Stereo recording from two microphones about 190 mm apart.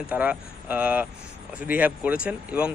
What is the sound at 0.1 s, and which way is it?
Speech, 5° right (ahead or behind).